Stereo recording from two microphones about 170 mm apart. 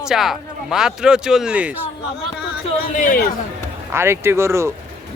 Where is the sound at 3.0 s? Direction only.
55° left (ahead or behind).